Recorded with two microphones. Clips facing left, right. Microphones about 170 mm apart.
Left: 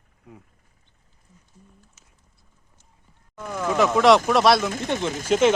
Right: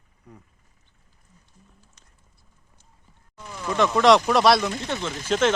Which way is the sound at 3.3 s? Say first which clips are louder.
Left 8 dB; 55° left (ahead or behind).